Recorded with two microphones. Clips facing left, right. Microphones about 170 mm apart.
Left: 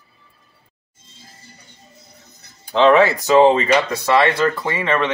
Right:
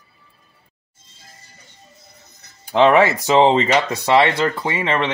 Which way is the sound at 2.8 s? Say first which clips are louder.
Left 1 dB; 20° right (ahead or behind).